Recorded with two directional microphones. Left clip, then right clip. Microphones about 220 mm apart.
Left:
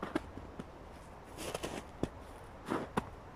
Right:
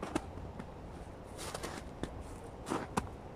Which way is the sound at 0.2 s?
Centre (ahead or behind).